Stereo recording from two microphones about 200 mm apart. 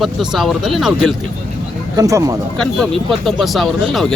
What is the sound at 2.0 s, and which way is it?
Speech, 15° right (ahead or behind).